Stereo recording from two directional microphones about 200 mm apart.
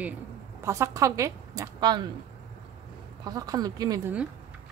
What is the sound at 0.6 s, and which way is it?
A woman's voice, 15° right (ahead or behind).